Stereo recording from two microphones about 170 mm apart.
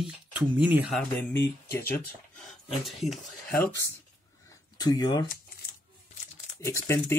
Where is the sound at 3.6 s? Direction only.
90° left.